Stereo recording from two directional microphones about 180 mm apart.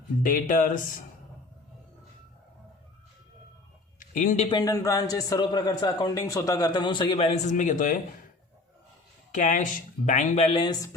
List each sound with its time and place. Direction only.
0.2 s speech: 50° left (ahead or behind)
4.0 s speech: 50° left (ahead or behind)
4.4 s a man's voice: 20° left (ahead or behind); by 7.9 s 45° left (ahead or behind)
9.3 s a man's voice: 45° left (ahead or behind); by 10.9 s 20° left (ahead or behind)